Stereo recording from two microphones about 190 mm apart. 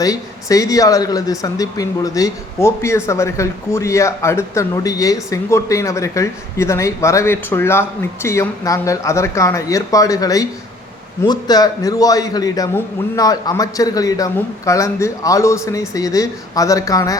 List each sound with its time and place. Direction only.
0.0 s speech: 20° left (ahead or behind)